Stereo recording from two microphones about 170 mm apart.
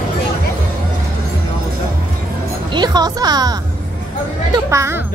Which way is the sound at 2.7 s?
25° right (ahead or behind).